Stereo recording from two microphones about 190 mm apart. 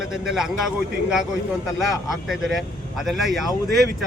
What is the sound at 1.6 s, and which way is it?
Speech, centre (ahead or behind).